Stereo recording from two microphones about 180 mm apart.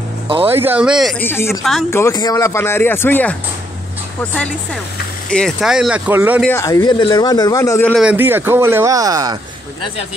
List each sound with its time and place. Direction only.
0.5 s speech: 10° right (ahead or behind)
1.2 s speech: 15° left (ahead or behind)
1.6 s speech: centre (ahead or behind)
1.9 s speech: 15° left (ahead or behind)
5.3 s speech: centre (ahead or behind)
6.6 s speech: 20° left (ahead or behind)
7.9 s speech: 5° right (ahead or behind)